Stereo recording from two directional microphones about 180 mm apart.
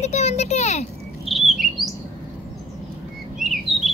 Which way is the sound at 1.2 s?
Centre (ahead or behind).